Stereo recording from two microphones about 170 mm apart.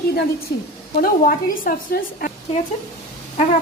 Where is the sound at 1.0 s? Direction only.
55° left (ahead or behind).